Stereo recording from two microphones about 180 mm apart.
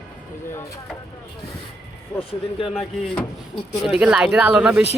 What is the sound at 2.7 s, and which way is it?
Speech, centre (ahead or behind).